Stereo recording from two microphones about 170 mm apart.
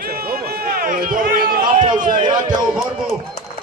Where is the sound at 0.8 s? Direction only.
55° right (ahead or behind).